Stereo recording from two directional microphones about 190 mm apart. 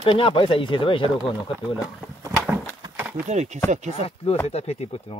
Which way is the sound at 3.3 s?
40° right (ahead or behind).